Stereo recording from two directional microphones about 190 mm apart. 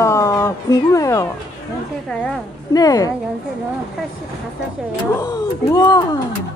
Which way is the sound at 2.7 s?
20° left (ahead or behind).